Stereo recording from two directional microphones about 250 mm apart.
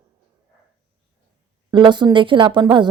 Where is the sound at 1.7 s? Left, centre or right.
Centre.